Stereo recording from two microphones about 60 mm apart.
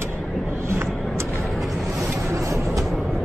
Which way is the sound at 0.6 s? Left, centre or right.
Right.